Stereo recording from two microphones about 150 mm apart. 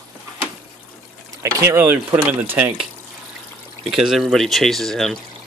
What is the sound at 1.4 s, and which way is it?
Speech, 20° right (ahead or behind).